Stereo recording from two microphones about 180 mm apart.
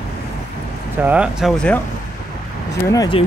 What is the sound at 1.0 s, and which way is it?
Speech, 5° right (ahead or behind).